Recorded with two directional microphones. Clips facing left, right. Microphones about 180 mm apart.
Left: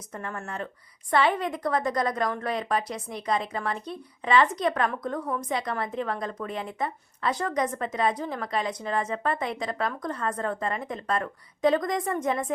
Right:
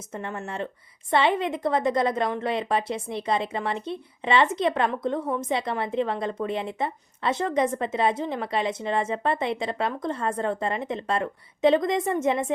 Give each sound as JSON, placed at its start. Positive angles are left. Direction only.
{"t": 0.1, "sound": "a woman's voice", "side_deg": -25}